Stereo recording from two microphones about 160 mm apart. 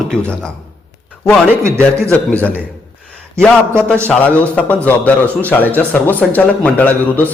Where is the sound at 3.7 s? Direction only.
15° right (ahead or behind).